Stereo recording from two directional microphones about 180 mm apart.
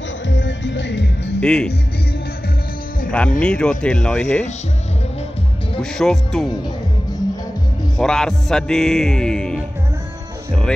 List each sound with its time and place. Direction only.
0.3 s music: 85° left
1.4 s music: 5° left (ahead or behind)
3.1 s music: 5° left (ahead or behind)
5.8 s music: 5° left (ahead or behind)
8.0 s music: 5° left (ahead or behind)